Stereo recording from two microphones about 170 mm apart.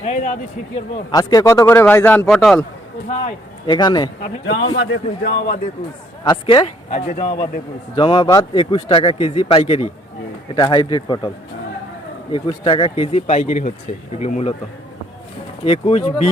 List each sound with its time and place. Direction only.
0.0 s a man's voice: 50° left (ahead or behind)
1.1 s a man's voice: 20° left (ahead or behind); by 2.6 s 5° left (ahead or behind)
3.7 s speech: 25° left (ahead or behind)
4.8 s speech: 75° left (ahead or behind)
6.2 s speech: 25° left (ahead or behind)
12.3 s speech: 30° left (ahead or behind)
15.6 s speech: 35° left (ahead or behind)